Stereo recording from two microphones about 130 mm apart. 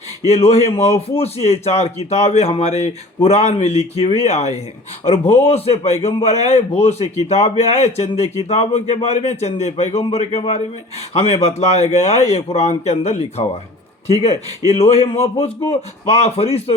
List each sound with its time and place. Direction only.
0.3 s a man's voice: 50° left (ahead or behind)